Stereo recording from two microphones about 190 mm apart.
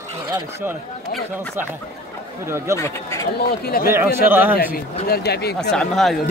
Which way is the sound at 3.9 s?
10° right (ahead or behind).